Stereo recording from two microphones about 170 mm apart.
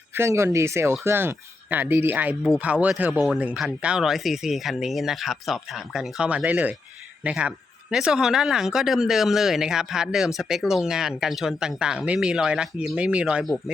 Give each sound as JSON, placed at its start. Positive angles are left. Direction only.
{"t": 0.1, "sound": "speech", "side_deg": -15}